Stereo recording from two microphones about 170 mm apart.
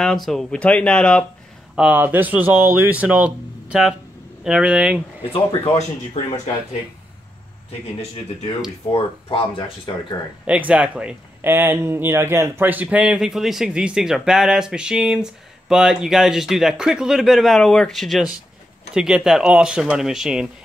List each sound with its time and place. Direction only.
0.0 s speech: centre (ahead or behind)
1.8 s speech: 10° right (ahead or behind)
5.8 s speech: 45° left (ahead or behind)
8.9 s speech: 30° left (ahead or behind)
10.4 s speech: 5° right (ahead or behind)